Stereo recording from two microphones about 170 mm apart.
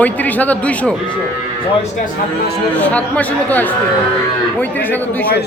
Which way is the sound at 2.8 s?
10° left (ahead or behind).